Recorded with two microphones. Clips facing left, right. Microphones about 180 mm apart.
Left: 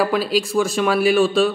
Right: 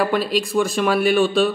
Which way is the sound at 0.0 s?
Centre (ahead or behind).